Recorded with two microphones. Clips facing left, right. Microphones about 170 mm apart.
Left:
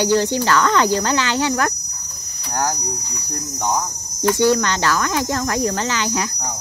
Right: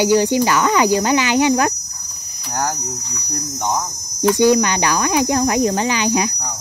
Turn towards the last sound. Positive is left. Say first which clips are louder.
# right 4 dB
turn(degrees=-15)  # may be behind; listen again after turning